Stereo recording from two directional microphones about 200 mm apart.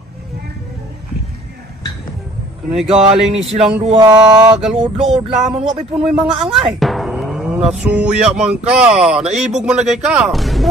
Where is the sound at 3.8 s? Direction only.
25° right (ahead or behind).